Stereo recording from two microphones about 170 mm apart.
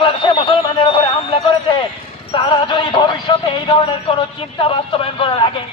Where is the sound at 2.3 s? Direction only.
25° left (ahead or behind).